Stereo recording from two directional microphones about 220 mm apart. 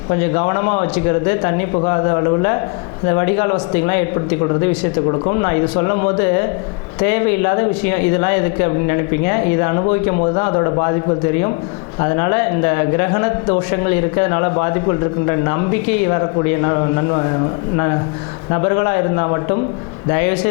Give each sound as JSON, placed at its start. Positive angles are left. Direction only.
{"t": 0.1, "sound": "a man's voice", "side_deg": 20}
{"t": 5.2, "sound": "a man's voice", "side_deg": 25}
{"t": 11.9, "sound": "a man's voice", "side_deg": 20}
{"t": 16.6, "sound": "a man's voice", "side_deg": 25}
{"t": 18.5, "sound": "a man's voice", "side_deg": 20}